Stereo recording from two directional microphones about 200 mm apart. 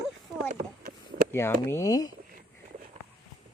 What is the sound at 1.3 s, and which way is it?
Speech, 10° left (ahead or behind).